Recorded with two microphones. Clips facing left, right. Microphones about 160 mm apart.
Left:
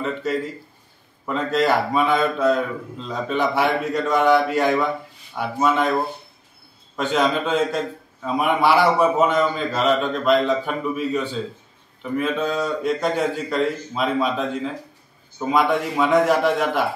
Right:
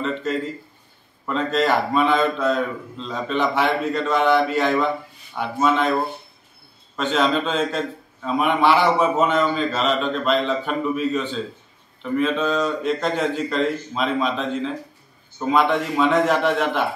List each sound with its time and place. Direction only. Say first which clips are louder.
0.0 s a sound: even; 10° left (ahead or behind)
1.2 s a man's voice: even; 10° left (ahead or behind)
7.0 s a man's voice: even; 10° left (ahead or behind)